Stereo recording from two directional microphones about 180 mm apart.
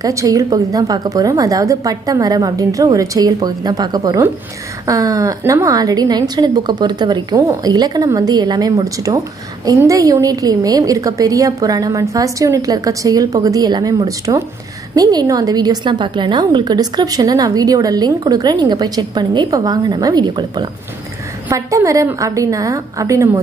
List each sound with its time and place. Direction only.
0.0 s a woman's voice: 20° right (ahead or behind)